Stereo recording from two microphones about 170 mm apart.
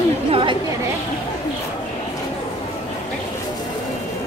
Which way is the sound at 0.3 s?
30° right (ahead or behind).